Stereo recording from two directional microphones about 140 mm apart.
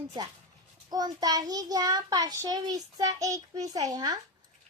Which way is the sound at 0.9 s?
25° right (ahead or behind).